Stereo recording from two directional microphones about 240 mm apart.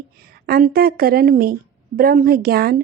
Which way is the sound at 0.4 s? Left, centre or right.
Right.